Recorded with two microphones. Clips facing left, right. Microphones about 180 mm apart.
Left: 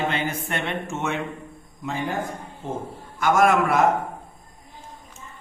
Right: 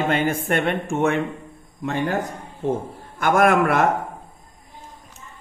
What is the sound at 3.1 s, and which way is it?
Speech, 55° right (ahead or behind).